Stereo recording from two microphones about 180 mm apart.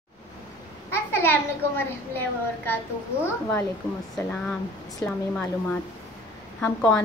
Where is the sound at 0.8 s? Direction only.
15° left (ahead or behind).